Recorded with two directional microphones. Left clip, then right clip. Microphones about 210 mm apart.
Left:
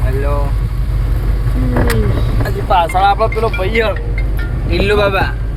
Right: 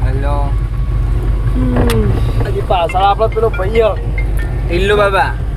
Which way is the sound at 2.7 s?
Centre (ahead or behind).